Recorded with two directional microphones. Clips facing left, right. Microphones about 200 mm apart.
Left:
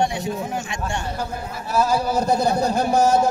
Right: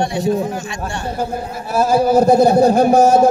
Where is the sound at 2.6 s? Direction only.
55° right (ahead or behind).